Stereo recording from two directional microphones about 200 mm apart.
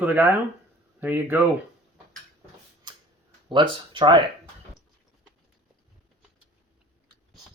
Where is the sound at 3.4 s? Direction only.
25° right (ahead or behind).